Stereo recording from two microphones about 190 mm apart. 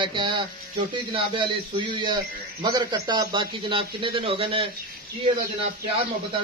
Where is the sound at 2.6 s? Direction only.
20° right (ahead or behind).